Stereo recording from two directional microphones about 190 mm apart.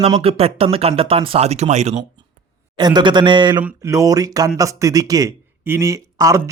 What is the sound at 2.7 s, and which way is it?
Speech, 25° right (ahead or behind).